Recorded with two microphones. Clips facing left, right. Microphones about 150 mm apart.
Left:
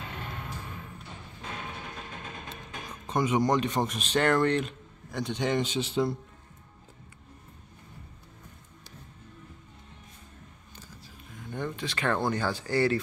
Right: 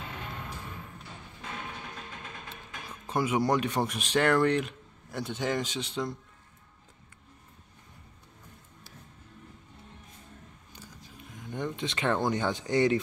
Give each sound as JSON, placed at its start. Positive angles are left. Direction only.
{"t": 3.1, "sound": "speech", "side_deg": -10}
{"t": 11.5, "sound": "speech", "side_deg": -20}